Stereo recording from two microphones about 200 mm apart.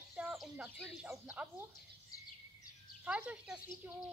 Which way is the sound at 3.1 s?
5° right (ahead or behind).